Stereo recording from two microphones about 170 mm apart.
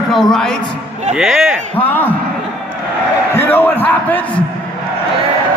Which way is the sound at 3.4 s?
10° left (ahead or behind).